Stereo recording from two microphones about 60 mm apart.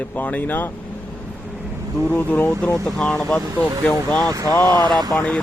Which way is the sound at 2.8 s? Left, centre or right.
Centre.